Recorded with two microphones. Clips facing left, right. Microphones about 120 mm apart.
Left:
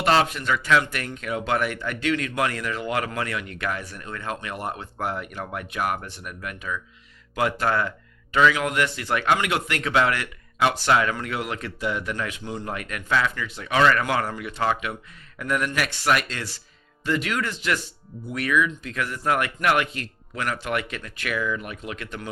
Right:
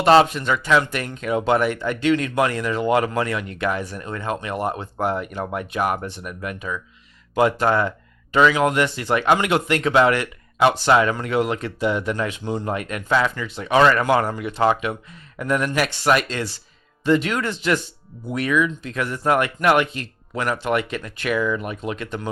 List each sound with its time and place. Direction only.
0.0 s speech: 25° right (ahead or behind)